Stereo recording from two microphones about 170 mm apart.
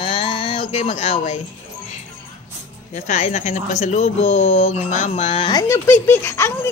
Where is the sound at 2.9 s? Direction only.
45° left (ahead or behind); by 6.7 s 15° left (ahead or behind).